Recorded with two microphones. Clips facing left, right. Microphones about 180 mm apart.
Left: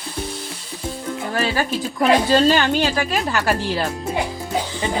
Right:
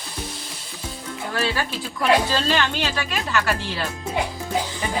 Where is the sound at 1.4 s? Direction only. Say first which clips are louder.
Left 3 dB; 45° left (ahead or behind).